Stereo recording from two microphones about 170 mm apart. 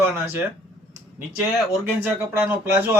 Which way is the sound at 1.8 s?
10° right (ahead or behind).